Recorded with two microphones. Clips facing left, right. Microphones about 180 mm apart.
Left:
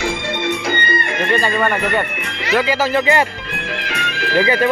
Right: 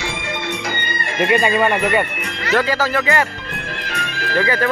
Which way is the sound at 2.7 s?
20° left (ahead or behind).